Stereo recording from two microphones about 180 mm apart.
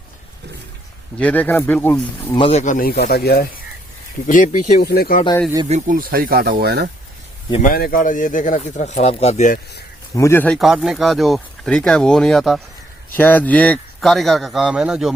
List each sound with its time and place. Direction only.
1.2 s speech: 10° left (ahead or behind)
2.3 s speech: 30° left (ahead or behind); by 3.5 s 60° left (ahead or behind)
4.3 s speech: 45° left (ahead or behind)
4.8 s speech: 60° left (ahead or behind)
5.6 s speech: 45° right (ahead or behind); by 6.8 s 60° right (ahead or behind)
7.6 s speech: 55° left (ahead or behind)
10.2 s speech: 15° left (ahead or behind); by 15.1 s 5° right (ahead or behind)